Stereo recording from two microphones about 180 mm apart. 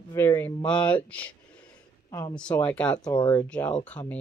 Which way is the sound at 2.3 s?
5° left (ahead or behind).